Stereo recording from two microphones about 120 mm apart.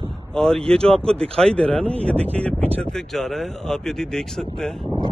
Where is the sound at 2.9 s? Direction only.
Centre (ahead or behind).